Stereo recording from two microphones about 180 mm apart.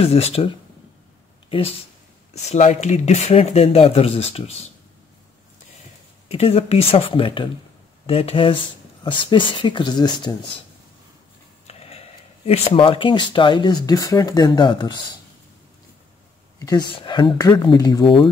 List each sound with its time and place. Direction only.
0.0 s speech: 35° left (ahead or behind)
1.5 s speech: 30° left (ahead or behind)
6.3 s speech: 35° left (ahead or behind)
11.6 s a sound: 35° left (ahead or behind)
12.4 s speech: 30° left (ahead or behind)
16.5 s speech: 20° left (ahead or behind)